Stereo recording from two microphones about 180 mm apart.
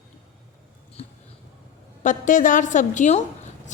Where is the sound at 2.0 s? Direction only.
45° left (ahead or behind).